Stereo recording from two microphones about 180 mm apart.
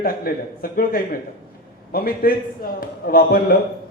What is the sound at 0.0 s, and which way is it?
A man's voice, 55° left (ahead or behind).